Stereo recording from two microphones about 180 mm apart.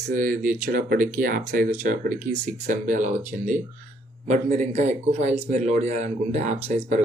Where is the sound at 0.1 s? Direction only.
50° right (ahead or behind).